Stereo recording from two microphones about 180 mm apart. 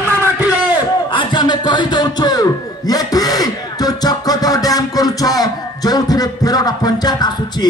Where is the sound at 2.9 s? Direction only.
20° left (ahead or behind).